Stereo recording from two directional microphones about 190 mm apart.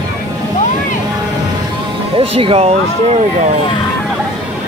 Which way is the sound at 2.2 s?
30° right (ahead or behind).